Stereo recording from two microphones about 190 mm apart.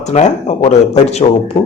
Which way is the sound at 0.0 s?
35° left (ahead or behind).